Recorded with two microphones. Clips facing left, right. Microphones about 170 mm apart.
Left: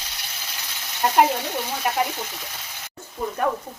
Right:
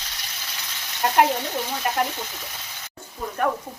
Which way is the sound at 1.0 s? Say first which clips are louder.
Left 1 dB; 5° left (ahead or behind).